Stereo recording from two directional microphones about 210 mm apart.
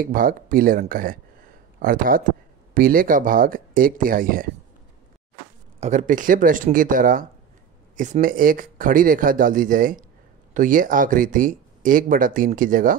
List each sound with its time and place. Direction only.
0.0 s speech: 40° right (ahead or behind)
5.8 s speech: 35° right (ahead or behind)